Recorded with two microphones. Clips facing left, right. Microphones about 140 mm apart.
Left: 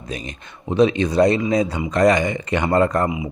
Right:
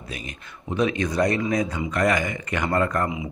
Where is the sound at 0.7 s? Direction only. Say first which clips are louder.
Left 7 dB; 25° left (ahead or behind).